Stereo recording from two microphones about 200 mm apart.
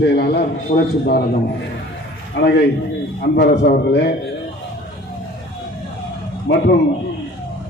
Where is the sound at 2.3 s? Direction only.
55° left (ahead or behind).